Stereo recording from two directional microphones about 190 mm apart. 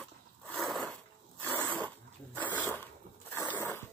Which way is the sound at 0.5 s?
Centre (ahead or behind).